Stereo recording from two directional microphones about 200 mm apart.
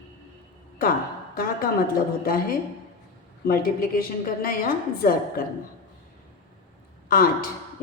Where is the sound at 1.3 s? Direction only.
45° left (ahead or behind).